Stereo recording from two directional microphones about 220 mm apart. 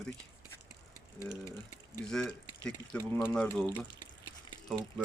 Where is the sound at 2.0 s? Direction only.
5° left (ahead or behind).